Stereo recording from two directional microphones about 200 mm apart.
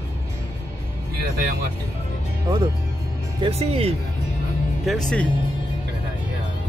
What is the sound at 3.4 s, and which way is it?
Speech, 30° right (ahead or behind).